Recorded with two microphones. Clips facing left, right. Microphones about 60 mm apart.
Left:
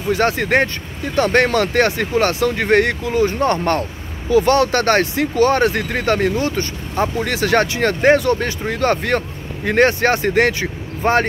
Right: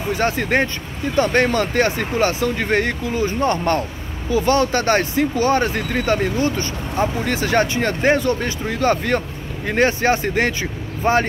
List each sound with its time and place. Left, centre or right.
0.2 s speech: left
7.3 s speech: left
7.8 s speech: left
8.2 s speech: left